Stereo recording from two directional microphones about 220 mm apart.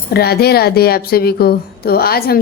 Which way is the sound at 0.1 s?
45° left (ahead or behind).